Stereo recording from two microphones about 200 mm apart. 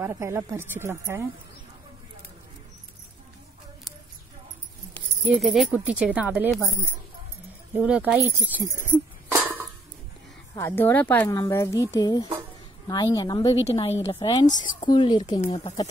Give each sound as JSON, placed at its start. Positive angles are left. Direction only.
{"t": 0.0, "sound": "a woman's voice", "side_deg": -15}
{"t": 4.9, "sound": "speech", "side_deg": 0}
{"t": 7.7, "sound": "a woman's voice", "side_deg": -10}
{"t": 9.3, "sound": "a sound", "side_deg": -10}
{"t": 10.5, "sound": "a woman's voice", "side_deg": 10}
{"t": 13.7, "sound": "a woman's voice", "side_deg": 30}
{"t": 14.8, "sound": "a woman's voice", "side_deg": 20}